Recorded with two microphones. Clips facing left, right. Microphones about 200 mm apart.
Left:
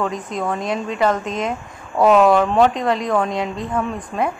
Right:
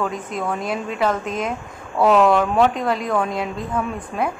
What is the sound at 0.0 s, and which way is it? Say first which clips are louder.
A woman's voice: left 2 dB; 5° right (ahead or behind).